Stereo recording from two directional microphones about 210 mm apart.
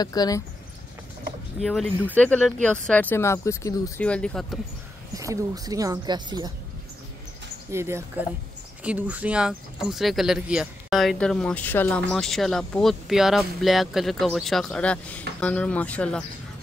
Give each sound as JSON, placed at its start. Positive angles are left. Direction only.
{"t": 0.0, "sound": "speech", "side_deg": 20}
{"t": 1.6, "sound": "speech", "side_deg": 0}
{"t": 5.1, "sound": "speech", "side_deg": -15}
{"t": 7.7, "sound": "speech", "side_deg": -10}